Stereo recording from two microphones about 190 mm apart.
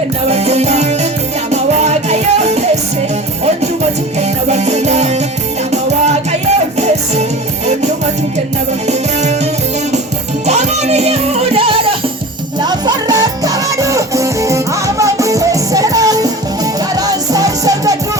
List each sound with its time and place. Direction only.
0.3 s music: 35° right (ahead or behind)
4.2 s music: 35° right (ahead or behind)
8.9 s music: 35° right (ahead or behind); by 17.9 s 20° right (ahead or behind)